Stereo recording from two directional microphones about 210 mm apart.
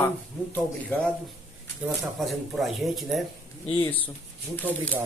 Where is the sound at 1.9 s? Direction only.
Centre (ahead or behind).